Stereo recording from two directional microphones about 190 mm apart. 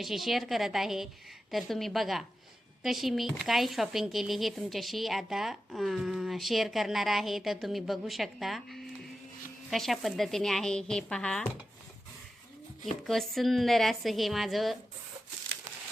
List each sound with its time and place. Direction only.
0.0 s speech: centre (ahead or behind)
12.8 s speech: centre (ahead or behind)